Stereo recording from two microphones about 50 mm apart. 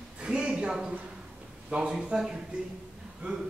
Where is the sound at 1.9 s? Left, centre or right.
Centre.